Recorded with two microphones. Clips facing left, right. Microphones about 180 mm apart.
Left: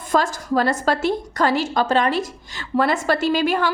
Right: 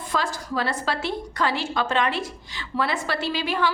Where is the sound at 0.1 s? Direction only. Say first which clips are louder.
Left 7 dB; 45° left (ahead or behind).